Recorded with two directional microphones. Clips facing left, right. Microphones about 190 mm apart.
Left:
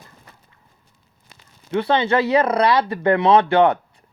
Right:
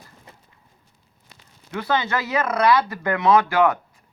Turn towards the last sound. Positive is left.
turn(degrees=30)  # may be behind; listen again after turning